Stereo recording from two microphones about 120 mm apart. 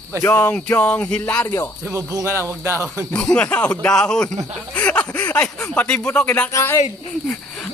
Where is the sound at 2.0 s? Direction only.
25° right (ahead or behind).